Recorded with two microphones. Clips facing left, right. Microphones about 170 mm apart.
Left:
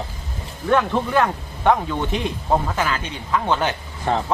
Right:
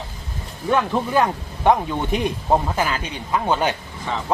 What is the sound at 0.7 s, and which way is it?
Speech, 5° right (ahead or behind).